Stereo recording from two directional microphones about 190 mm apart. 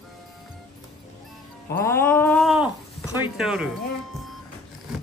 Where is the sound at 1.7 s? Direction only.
15° left (ahead or behind); by 2.7 s 5° right (ahead or behind).